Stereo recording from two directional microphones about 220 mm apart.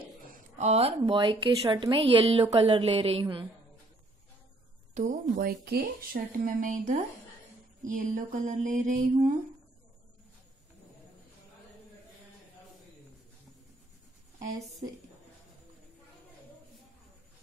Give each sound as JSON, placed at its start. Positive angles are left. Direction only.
{"t": 0.3, "sound": "a woman's voice", "side_deg": -30}
{"t": 4.9, "sound": "a woman's voice", "side_deg": -35}
{"t": 5.3, "sound": "a woman's voice", "side_deg": -45}
{"t": 7.8, "sound": "mantra", "side_deg": -35}
{"t": 14.4, "sound": "a woman's voice", "side_deg": -30}